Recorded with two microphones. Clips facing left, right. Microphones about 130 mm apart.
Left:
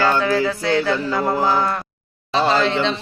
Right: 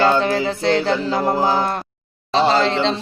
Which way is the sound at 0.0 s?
20° right (ahead or behind).